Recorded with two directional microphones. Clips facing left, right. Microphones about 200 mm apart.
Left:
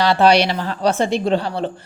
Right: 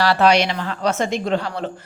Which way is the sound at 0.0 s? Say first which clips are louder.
Left 2 dB; 25° left (ahead or behind).